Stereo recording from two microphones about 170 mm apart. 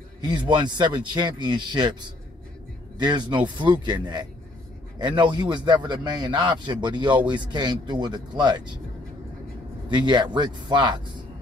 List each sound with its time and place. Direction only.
0.2 s a man's voice: 25° right (ahead or behind)
9.8 s a man's voice: 25° right (ahead or behind)